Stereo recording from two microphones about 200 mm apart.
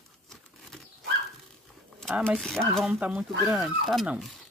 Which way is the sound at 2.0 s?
Centre (ahead or behind).